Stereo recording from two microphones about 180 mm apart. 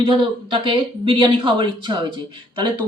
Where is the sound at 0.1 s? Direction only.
25° right (ahead or behind).